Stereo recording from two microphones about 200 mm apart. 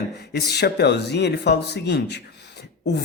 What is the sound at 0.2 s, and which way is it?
Speech, 55° left (ahead or behind).